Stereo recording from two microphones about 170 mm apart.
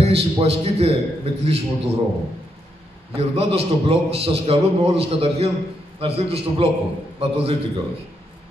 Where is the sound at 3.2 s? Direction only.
35° right (ahead or behind).